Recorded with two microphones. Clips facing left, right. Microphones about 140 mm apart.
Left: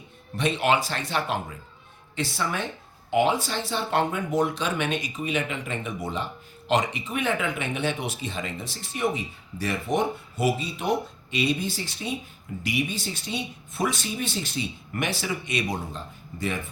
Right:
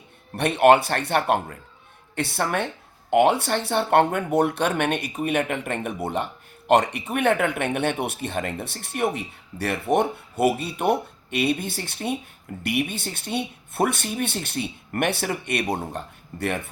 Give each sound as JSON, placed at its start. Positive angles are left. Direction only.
{"t": 0.3, "sound": "speech", "side_deg": -60}